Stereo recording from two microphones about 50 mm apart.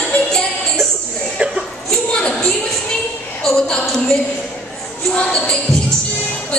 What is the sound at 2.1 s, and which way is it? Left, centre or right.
A woman's voice, centre.